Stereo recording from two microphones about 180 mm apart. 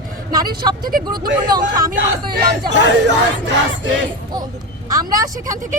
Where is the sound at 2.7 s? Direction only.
80° right.